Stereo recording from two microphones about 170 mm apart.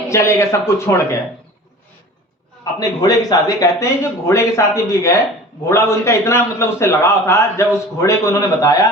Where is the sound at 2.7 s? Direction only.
20° left (ahead or behind).